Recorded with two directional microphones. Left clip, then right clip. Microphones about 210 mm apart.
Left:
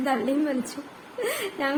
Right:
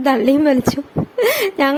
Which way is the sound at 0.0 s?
45° right (ahead or behind).